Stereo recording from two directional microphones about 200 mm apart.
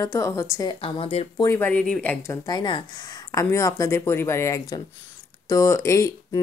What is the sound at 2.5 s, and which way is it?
Speech, 20° left (ahead or behind).